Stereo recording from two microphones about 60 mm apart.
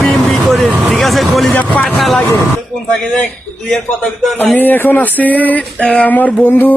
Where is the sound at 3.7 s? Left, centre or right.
Centre.